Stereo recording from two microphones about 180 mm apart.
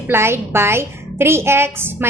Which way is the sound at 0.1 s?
15° right (ahead or behind).